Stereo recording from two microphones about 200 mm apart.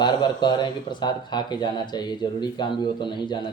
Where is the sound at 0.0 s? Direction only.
20° left (ahead or behind).